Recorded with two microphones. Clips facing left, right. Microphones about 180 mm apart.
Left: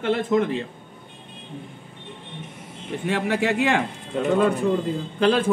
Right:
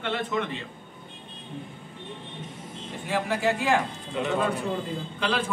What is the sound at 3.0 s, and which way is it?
Speech, 85° left.